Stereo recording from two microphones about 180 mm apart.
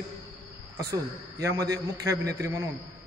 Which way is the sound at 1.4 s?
20° right (ahead or behind).